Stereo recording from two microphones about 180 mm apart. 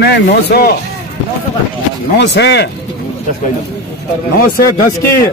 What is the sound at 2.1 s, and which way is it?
Speech, 70° left (ahead or behind).